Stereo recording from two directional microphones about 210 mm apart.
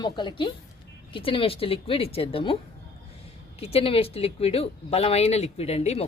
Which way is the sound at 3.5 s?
30° left (ahead or behind).